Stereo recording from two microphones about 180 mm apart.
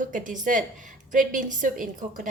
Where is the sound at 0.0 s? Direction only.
45° right (ahead or behind).